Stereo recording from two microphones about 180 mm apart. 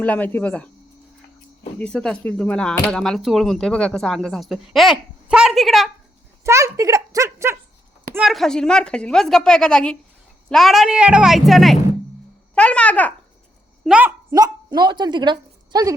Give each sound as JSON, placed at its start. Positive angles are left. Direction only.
{"t": 0.0, "sound": "speech", "side_deg": 10}
{"t": 1.8, "sound": "speech", "side_deg": 5}
{"t": 6.4, "sound": "speech", "side_deg": -15}
{"t": 8.1, "sound": "a child's voice", "side_deg": 0}
{"t": 13.8, "sound": "a woman's voice", "side_deg": -10}
{"t": 14.3, "sound": "a woman's voice", "side_deg": -20}